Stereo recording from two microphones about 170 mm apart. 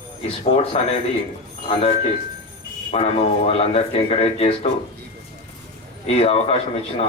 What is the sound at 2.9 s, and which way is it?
Speech, 35° left (ahead or behind).